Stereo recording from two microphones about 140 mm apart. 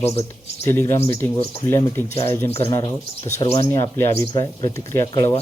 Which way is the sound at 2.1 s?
20° left (ahead or behind).